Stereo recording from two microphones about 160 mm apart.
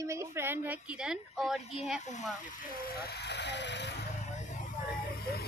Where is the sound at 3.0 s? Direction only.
90° left.